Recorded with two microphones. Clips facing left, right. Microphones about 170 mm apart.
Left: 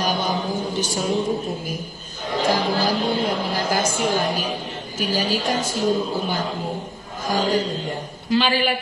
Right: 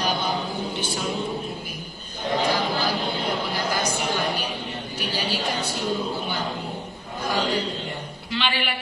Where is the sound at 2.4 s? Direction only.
45° left (ahead or behind).